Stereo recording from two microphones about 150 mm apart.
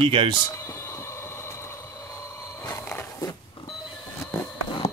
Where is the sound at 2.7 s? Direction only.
20° left (ahead or behind).